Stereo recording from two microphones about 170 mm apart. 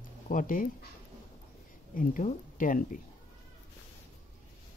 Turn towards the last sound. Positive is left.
turn(degrees=50)  # may be behind; listen again after turning